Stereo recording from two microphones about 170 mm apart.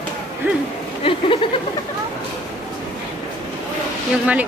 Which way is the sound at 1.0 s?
30° left (ahead or behind).